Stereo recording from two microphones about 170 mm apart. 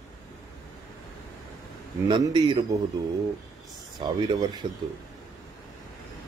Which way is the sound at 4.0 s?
25° right (ahead or behind).